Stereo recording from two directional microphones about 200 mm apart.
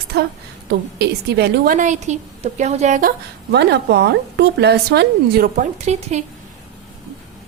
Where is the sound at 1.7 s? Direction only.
40° right (ahead or behind).